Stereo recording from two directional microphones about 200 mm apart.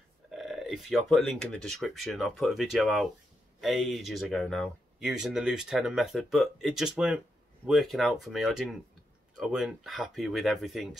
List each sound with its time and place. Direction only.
0.3 s speech: centre (ahead or behind)